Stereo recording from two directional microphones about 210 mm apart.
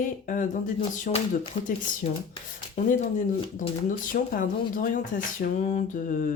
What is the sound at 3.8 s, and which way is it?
Speech, 40° left (ahead or behind).